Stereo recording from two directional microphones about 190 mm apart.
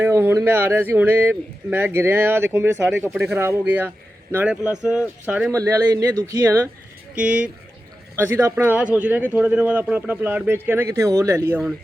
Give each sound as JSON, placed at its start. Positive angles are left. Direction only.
{"t": 0.0, "sound": "speech", "side_deg": -10}
{"t": 5.5, "sound": "speech", "side_deg": -15}
{"t": 7.2, "sound": "speech", "side_deg": -5}